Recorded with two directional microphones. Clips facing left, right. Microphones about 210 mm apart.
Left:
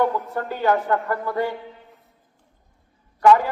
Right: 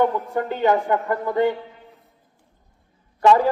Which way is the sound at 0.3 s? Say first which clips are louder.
Right 3 dB; 20° right (ahead or behind).